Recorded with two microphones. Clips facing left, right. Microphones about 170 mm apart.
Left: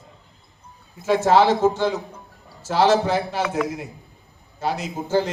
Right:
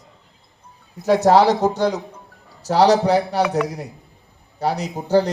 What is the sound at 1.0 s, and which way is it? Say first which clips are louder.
A man's voice: right 3 dB; 40° right (ahead or behind).